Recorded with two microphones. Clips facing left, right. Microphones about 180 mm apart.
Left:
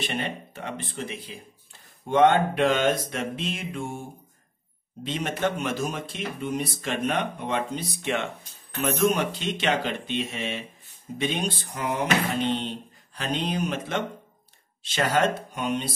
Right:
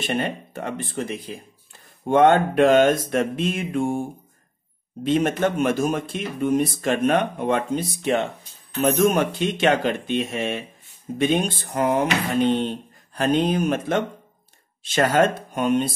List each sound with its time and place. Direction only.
0.0 s speech: 45° right (ahead or behind)
5.0 s speech: 50° right (ahead or behind)
8.7 s speech: 50° right (ahead or behind)